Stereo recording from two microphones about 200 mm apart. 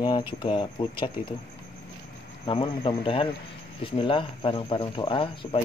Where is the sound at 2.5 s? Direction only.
25° left (ahead or behind).